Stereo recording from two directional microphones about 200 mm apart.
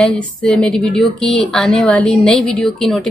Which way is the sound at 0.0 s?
5° left (ahead or behind).